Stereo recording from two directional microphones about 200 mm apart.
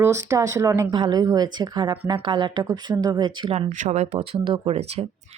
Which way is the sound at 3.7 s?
35° right (ahead or behind).